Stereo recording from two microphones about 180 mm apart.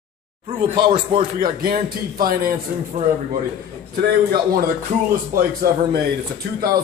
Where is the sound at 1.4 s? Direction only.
55° right (ahead or behind).